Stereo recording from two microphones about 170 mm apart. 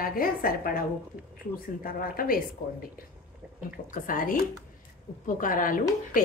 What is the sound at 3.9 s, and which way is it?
Speech, 55° left (ahead or behind).